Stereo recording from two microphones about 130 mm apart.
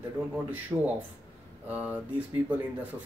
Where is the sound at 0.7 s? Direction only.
5° right (ahead or behind).